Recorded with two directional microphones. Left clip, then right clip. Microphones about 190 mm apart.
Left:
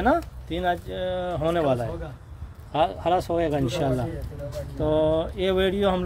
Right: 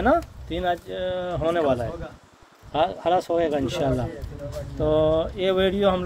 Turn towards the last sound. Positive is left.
turn(degrees=0)  # may be behind; listen again after turning